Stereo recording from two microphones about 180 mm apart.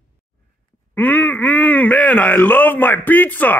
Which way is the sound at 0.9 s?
10° left (ahead or behind).